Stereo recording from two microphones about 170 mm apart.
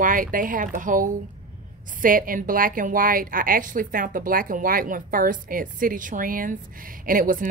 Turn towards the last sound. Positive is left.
turn(degrees=-55)  # may be behind; listen again after turning